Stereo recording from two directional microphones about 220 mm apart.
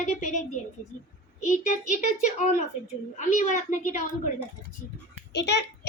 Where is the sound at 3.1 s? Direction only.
35° left (ahead or behind).